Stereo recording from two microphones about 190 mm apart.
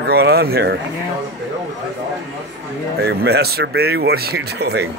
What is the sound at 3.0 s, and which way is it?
Speech, 55° right (ahead or behind).